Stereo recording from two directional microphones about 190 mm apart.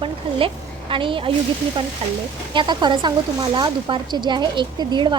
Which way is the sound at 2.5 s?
25° right (ahead or behind).